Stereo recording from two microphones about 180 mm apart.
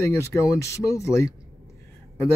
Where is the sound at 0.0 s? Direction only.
15° left (ahead or behind).